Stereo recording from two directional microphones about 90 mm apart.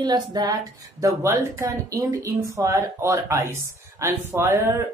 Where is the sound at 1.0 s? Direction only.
30° right (ahead or behind).